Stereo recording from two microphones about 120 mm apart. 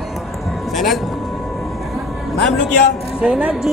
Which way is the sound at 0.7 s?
Centre (ahead or behind).